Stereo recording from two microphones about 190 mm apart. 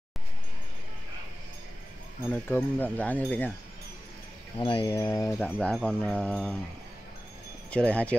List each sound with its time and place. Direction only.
2.4 s speech: 10° left (ahead or behind)
4.6 s a sound: 25° left (ahead or behind)
4.9 s speech: 15° left (ahead or behind)
5.6 s speech: 5° left (ahead or behind)
7.7 s speech: 5° left (ahead or behind)